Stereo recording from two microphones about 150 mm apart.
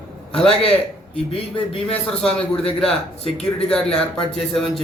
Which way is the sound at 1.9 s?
5° left (ahead or behind).